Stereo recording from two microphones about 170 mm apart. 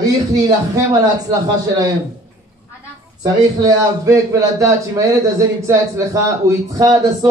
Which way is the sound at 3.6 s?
20° right (ahead or behind).